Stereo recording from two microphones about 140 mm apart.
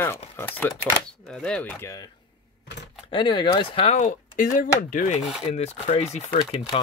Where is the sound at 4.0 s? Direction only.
65° left (ahead or behind).